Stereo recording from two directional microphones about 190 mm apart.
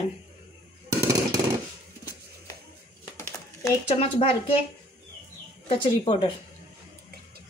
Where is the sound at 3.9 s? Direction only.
30° left (ahead or behind).